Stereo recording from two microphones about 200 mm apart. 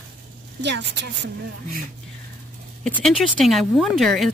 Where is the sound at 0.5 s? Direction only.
60° right (ahead or behind).